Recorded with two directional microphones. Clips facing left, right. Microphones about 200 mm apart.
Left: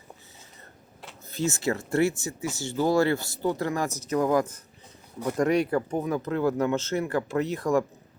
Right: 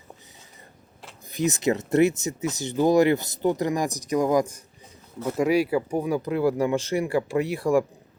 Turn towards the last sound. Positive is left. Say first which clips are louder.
# right 3 dB
turn(degrees=-10)  # may be behind; listen again after turning